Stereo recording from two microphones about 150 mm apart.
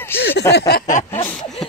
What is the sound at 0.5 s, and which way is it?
Speech, 90° left.